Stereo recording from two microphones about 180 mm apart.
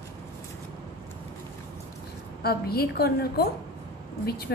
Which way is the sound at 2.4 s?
60° left (ahead or behind).